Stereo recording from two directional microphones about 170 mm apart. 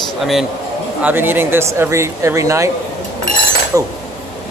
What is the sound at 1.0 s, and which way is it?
Speech, 10° right (ahead or behind).